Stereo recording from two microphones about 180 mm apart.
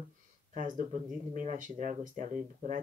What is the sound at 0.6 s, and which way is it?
Speech, 45° right (ahead or behind).